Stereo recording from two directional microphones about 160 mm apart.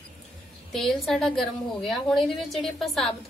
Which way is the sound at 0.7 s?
Centre (ahead or behind).